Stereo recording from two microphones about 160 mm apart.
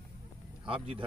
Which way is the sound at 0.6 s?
35° right (ahead or behind).